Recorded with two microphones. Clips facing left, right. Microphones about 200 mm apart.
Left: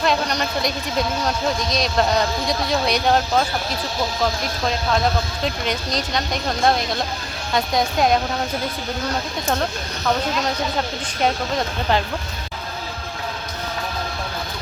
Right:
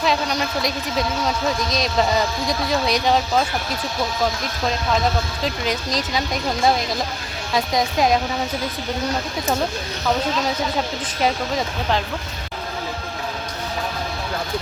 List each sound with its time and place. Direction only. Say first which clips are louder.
0.0 s speech: even; centre (ahead or behind)
5.4 s speech: even; centre (ahead or behind)
11.2 s speech: even; centre (ahead or behind)